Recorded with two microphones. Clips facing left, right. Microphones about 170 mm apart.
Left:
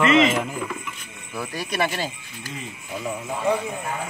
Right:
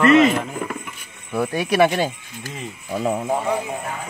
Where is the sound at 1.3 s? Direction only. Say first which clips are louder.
Right 9 dB; 60° right (ahead or behind).